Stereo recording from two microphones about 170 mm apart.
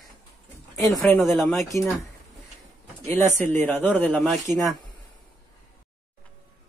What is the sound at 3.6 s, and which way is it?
Speech, 10° left (ahead or behind).